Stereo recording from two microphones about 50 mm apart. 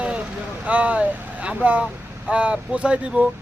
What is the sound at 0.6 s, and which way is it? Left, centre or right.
A man's voice, right.